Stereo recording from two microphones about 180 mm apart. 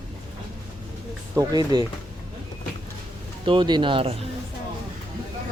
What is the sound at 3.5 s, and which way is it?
Speech, 25° right (ahead or behind).